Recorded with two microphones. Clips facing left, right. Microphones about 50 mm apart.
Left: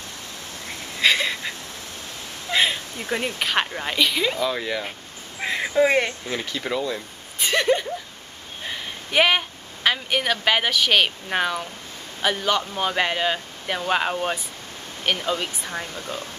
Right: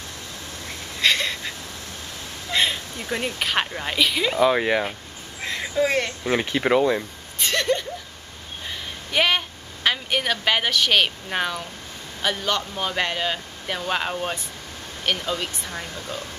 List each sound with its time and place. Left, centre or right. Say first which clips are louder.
0.7 s wheeze: left 1 dB; centre
2.5 s speech: left 1 dB; centre
4.4 s speech: right 6 dB; right
5.4 s a sound: left 3 dB; centre
6.2 s speech: right 6 dB; right
7.3 s speech: left 2 dB; centre
8.6 s a sound: left 2 dB; centre
9.8 s speech: left 1 dB; centre